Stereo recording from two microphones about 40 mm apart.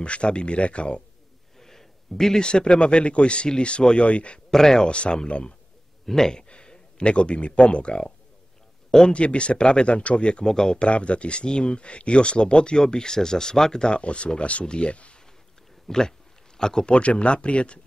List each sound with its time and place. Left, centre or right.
0.0 s speech: left
1.6 s a sound: centre
2.4 s speech: left
4.5 s speech: centre
4.8 s a man's voice: left
6.5 s speech: left
9.1 s speech: left
10.4 s a man's voice: centre
10.8 s speech: left
15.9 s a sound: centre
16.9 s speech: left